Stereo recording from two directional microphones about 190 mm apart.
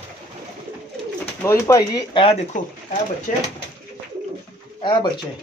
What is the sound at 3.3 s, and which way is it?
Speech, 45° left (ahead or behind).